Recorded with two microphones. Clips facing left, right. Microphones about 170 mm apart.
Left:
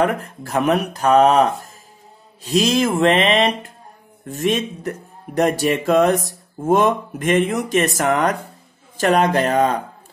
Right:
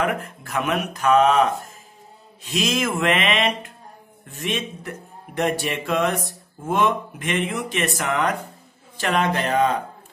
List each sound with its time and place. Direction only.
0.0 s speech: 35° left (ahead or behind)